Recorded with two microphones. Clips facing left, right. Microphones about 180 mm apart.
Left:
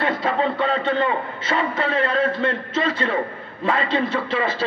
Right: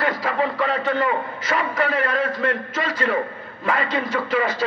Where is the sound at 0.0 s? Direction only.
25° left (ahead or behind).